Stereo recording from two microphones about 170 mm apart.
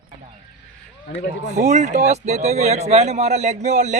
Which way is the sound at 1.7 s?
45° right (ahead or behind).